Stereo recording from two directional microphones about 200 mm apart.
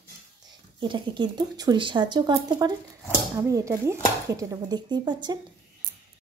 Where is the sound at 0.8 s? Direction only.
20° right (ahead or behind).